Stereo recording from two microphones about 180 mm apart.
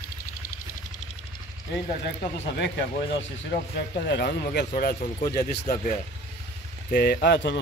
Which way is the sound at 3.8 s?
65° left (ahead or behind).